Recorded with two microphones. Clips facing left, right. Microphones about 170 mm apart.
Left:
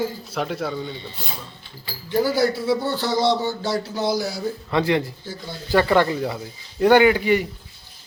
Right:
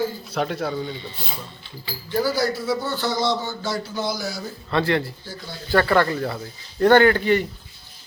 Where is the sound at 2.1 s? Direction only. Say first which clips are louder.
Left 2 dB; 20° left (ahead or behind).